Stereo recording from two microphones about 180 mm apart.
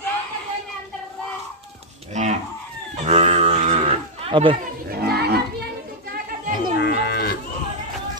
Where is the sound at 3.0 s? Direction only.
35° right (ahead or behind).